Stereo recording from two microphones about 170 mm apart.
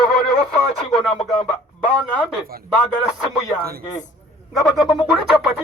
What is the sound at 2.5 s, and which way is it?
Speech, 60° right (ahead or behind).